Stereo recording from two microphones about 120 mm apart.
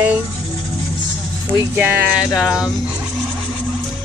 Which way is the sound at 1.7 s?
15° right (ahead or behind).